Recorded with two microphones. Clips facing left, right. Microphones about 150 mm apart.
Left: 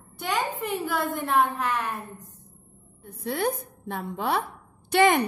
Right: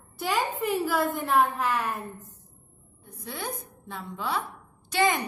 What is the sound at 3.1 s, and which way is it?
A woman's voice, 60° left (ahead or behind).